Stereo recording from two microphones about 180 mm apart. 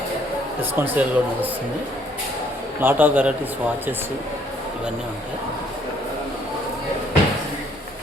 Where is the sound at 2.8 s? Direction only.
10° right (ahead or behind).